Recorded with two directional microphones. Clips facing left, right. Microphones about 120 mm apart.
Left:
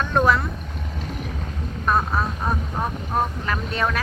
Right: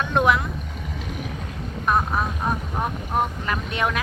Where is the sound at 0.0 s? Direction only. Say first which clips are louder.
Left 1 dB; 15° right (ahead or behind).